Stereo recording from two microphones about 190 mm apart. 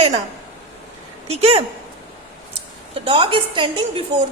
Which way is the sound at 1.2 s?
35° right (ahead or behind).